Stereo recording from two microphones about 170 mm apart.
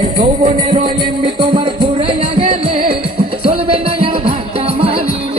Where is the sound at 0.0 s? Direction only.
40° right (ahead or behind).